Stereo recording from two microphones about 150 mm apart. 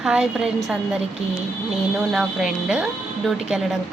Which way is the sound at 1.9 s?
5° right (ahead or behind).